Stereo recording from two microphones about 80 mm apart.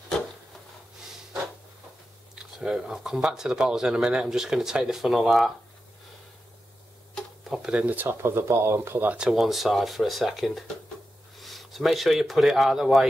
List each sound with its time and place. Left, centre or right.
2.3 s speech: centre
7.4 s a sound: centre
7.7 s speech: centre
9.3 s speech: centre